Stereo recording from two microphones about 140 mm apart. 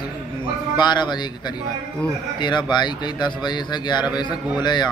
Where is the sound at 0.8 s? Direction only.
30° left (ahead or behind).